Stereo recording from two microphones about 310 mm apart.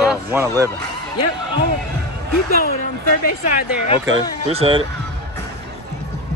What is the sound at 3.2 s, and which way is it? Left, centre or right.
Speech, left.